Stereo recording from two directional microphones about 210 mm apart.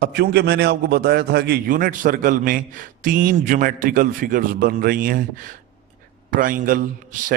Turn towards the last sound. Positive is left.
turn(degrees=-40)  # may be behind; listen again after turning